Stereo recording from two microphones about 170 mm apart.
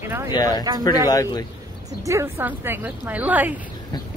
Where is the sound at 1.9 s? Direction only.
20° right (ahead or behind).